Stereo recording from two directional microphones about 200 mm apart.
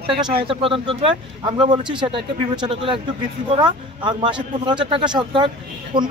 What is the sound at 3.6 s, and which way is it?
Speech, 25° right (ahead or behind).